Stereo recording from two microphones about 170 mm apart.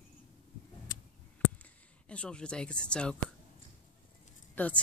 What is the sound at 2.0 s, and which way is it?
Speech, 5° left (ahead or behind).